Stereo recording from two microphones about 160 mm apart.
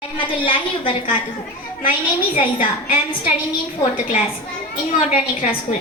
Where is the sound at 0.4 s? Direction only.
30° left (ahead or behind).